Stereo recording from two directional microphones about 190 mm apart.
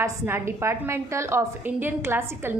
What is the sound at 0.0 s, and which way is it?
A woman's voice, 15° right (ahead or behind).